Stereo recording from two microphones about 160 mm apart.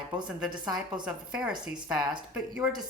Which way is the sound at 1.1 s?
5° right (ahead or behind).